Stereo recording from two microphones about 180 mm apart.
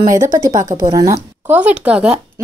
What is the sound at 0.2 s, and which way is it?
A woman's voice, 20° right (ahead or behind).